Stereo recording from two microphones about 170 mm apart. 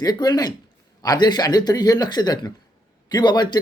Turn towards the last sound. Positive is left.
turn(degrees=25)  # may be behind; listen again after turning